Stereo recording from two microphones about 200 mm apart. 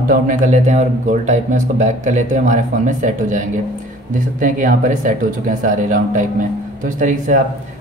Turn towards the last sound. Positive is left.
turn(degrees=-40)  # may be behind; listen again after turning